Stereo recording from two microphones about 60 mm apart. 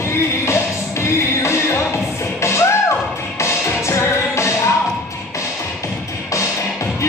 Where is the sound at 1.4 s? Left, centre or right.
Left.